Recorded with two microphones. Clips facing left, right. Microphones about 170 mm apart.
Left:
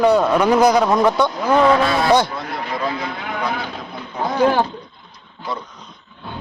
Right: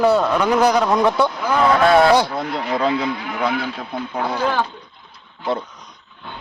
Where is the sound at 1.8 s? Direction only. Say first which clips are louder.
Right 6 dB; 55° right (ahead or behind).